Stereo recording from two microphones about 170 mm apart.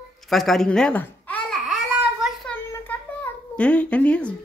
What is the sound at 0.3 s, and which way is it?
Babbling, centre (ahead or behind).